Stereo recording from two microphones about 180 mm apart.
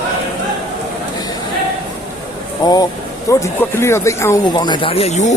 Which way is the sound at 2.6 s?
20° left (ahead or behind).